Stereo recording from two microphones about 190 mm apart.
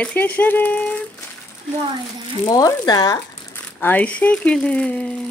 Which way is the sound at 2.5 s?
20° left (ahead or behind).